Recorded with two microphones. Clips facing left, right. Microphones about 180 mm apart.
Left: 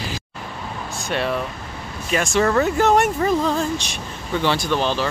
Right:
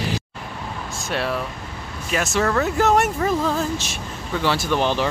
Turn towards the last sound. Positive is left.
turn(degrees=-15)  # may be behind; listen again after turning